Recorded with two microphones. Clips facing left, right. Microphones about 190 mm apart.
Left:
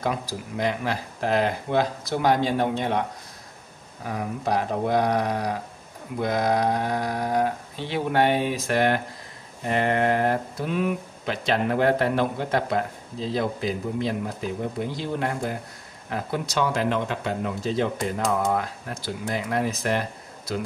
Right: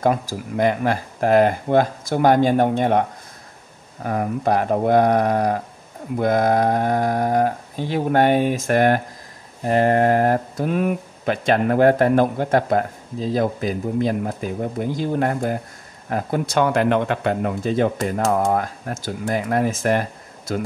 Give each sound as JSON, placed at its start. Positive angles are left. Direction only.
{"t": 0.0, "sound": "speech", "side_deg": -50}